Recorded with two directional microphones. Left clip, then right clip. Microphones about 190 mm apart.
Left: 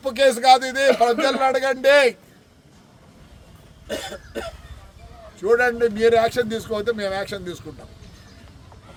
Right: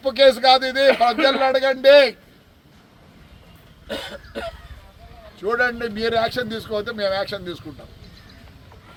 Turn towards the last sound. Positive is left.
turn(degrees=25)  # may be behind; listen again after turning